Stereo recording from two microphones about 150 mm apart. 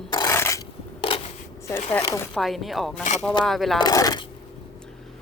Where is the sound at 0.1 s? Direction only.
25° left (ahead or behind).